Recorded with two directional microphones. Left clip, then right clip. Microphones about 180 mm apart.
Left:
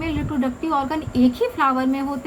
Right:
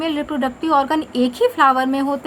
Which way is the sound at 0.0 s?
55° right (ahead or behind).